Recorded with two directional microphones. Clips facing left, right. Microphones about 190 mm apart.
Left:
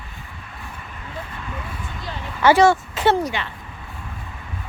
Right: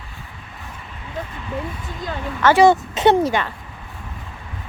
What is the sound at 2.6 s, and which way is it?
Speech, 20° right (ahead or behind).